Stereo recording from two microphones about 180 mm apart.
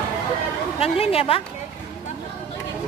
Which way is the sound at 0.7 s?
35° left (ahead or behind).